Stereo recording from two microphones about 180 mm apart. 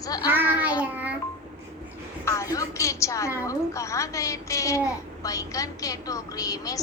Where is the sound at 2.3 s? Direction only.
20° left (ahead or behind).